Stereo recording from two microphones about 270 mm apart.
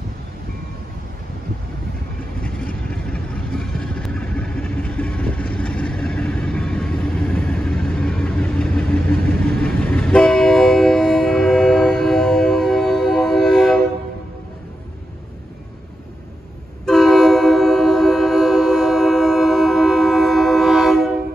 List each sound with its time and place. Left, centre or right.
2.4 s vehicle: centre
16.8 s train: centre